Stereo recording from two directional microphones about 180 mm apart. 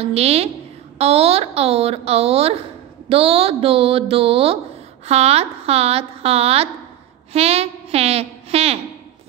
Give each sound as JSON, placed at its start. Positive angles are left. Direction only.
{"t": 0.0, "sound": "a woman's voice", "side_deg": -35}